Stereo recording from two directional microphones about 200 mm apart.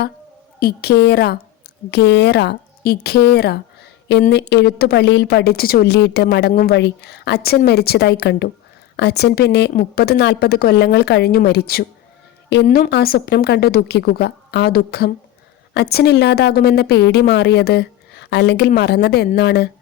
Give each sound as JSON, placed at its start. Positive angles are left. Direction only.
{"t": 0.6, "sound": "a woman's voice", "side_deg": 55}